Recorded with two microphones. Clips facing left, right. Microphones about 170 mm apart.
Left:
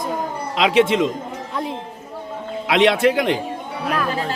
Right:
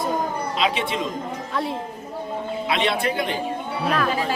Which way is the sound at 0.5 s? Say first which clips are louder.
Left 10 dB; 85° left.